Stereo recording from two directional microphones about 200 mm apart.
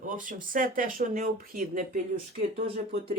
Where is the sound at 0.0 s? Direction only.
40° right (ahead or behind).